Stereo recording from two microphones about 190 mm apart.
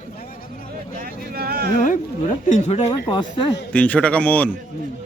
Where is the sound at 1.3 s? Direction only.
55° right (ahead or behind).